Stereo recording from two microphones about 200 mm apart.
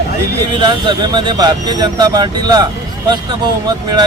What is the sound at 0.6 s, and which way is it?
Speech, 25° right (ahead or behind).